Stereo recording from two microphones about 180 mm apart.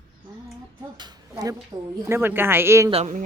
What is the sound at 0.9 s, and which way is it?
A child's voice, 25° right (ahead or behind).